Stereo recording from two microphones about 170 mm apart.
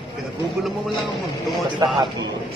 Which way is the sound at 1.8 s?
20° right (ahead or behind).